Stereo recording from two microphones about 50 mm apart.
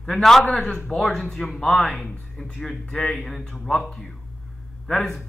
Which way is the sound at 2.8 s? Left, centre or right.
Left.